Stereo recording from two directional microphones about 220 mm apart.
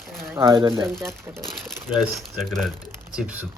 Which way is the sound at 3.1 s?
5° right (ahead or behind).